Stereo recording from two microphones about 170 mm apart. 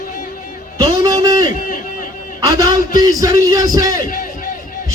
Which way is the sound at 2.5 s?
25° right (ahead or behind).